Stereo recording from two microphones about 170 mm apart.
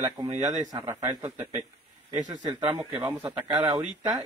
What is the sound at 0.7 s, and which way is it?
A woman's voice, 20° right (ahead or behind).